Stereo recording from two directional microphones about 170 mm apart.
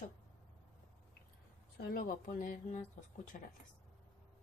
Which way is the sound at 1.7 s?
55° left (ahead or behind).